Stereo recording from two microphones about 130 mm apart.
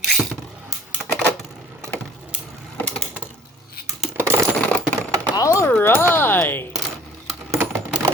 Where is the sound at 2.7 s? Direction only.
10° left (ahead or behind).